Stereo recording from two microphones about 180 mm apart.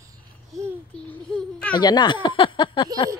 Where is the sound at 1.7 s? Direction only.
25° left (ahead or behind).